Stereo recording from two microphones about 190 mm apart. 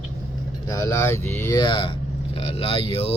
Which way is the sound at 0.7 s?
15° left (ahead or behind).